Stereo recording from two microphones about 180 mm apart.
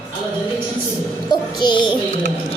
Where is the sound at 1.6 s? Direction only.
25° left (ahead or behind).